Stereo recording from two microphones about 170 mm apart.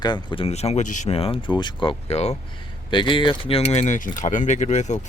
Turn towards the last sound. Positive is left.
turn(degrees=45)  # may be behind; listen again after turning